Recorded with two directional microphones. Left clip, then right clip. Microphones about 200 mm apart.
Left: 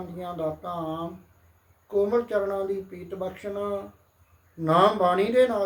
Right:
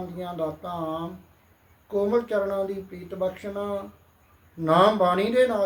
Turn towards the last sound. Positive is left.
turn(degrees=5)  # may be behind; listen again after turning